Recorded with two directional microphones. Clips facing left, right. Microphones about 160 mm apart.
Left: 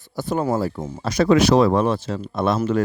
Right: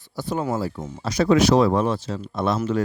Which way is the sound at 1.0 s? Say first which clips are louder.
Left 2 dB; 60° left (ahead or behind).